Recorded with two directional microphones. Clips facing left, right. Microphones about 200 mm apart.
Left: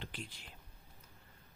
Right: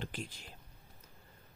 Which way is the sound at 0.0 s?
45° right (ahead or behind).